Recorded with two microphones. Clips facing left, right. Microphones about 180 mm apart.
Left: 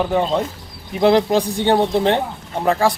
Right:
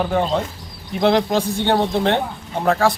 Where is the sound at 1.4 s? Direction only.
15° left (ahead or behind).